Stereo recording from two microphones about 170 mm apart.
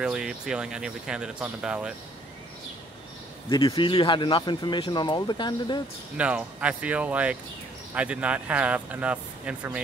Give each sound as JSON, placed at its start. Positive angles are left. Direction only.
{"t": 0.0, "sound": "speech", "side_deg": -5}
{"t": 3.4, "sound": "speech", "side_deg": 25}
{"t": 6.1, "sound": "speech", "side_deg": -5}